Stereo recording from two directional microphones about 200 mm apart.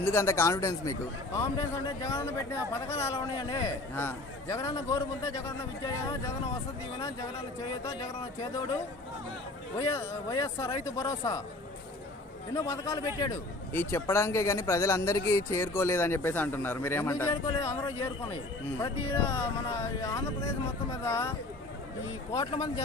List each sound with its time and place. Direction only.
0.0 s speech: 10° left (ahead or behind)
9.7 s speech: 15° left (ahead or behind)
12.5 s speech: 15° left (ahead or behind)